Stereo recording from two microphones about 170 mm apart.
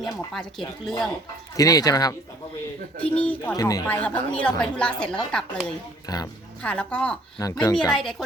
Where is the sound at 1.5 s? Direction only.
20° left (ahead or behind).